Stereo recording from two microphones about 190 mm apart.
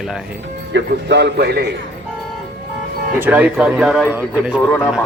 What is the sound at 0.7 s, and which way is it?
Speech, 65° right (ahead or behind).